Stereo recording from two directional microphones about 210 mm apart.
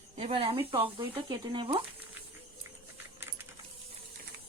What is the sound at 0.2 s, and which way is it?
Speech, 25° right (ahead or behind).